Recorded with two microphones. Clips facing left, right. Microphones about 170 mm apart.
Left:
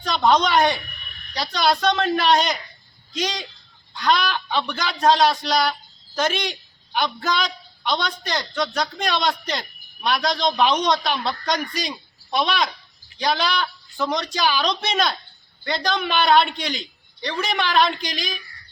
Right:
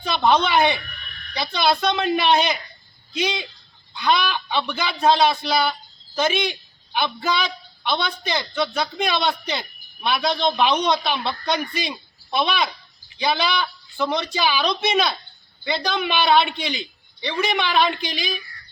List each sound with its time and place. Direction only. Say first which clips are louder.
0.0 s a man's voice: even; 5° right (ahead or behind)